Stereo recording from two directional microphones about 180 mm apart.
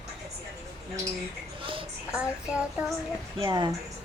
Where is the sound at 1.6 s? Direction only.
30° right (ahead or behind).